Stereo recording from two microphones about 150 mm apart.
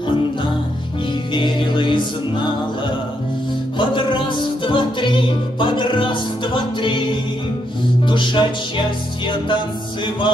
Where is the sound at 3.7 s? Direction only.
35° left (ahead or behind).